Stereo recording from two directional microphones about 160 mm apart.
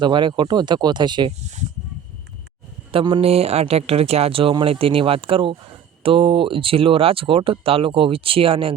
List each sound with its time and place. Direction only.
0.0 s speech: 30° right (ahead or behind)
2.9 s speech: 35° right (ahead or behind)